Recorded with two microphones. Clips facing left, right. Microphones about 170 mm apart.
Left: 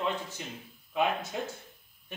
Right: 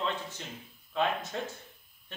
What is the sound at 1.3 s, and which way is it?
Speech, 10° left (ahead or behind).